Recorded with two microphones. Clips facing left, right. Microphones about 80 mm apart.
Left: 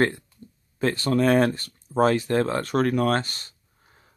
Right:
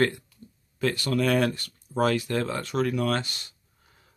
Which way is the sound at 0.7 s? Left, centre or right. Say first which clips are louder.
Left 3 dB; left.